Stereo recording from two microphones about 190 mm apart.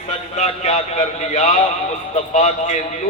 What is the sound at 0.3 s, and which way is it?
A man's voice, 35° left (ahead or behind).